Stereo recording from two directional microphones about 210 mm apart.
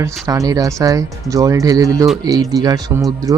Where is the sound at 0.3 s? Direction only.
15° right (ahead or behind).